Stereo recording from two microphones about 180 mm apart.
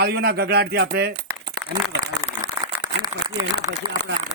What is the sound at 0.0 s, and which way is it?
Speech, 60° right (ahead or behind).